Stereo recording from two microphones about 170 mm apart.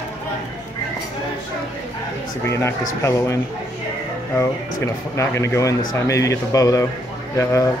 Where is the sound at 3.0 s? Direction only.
20° left (ahead or behind).